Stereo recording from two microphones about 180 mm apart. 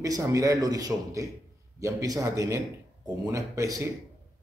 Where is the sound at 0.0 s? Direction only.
20° right (ahead or behind).